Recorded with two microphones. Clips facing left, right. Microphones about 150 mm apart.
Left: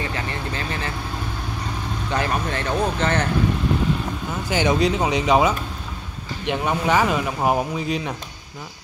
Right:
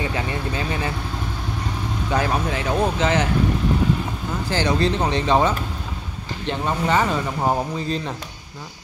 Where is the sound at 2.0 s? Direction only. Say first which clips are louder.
Right 2 dB; 10° right (ahead or behind).